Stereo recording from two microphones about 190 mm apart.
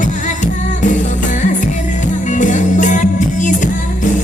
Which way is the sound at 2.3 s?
40° left (ahead or behind).